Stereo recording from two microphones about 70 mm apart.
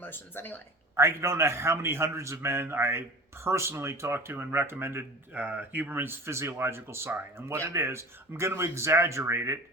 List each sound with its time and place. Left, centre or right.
0.0 s speech: left
0.9 s a man's voice: right